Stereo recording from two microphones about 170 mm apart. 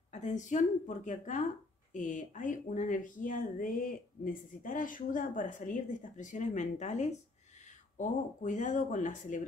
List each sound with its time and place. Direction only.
0.1 s a woman's voice: 45° left (ahead or behind)